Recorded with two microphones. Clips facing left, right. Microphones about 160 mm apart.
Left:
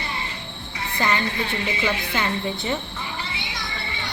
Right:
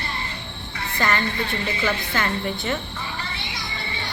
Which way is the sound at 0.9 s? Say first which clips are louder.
Even; 15° left (ahead or behind).